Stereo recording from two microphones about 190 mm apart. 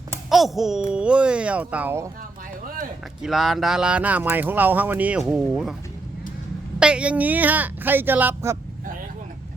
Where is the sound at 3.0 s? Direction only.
Centre (ahead or behind).